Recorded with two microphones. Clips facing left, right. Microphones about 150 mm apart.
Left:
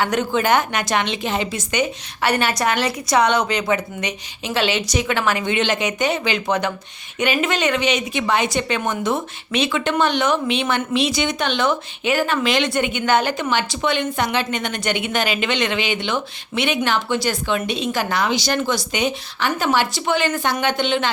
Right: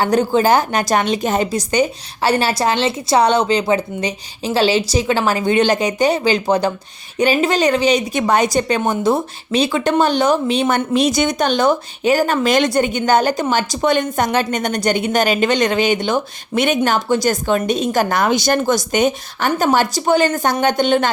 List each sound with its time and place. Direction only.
0.0 s a woman's voice: 35° right (ahead or behind)